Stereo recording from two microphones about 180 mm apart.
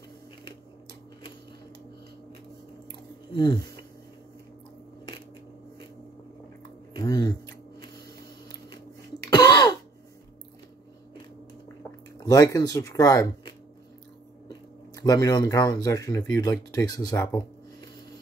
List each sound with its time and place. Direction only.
3.3 s speech: 25° left (ahead or behind)
7.0 s a sound: 20° left (ahead or behind)
9.3 s throat clearing: 20° left (ahead or behind)
12.2 s speech: 20° left (ahead or behind)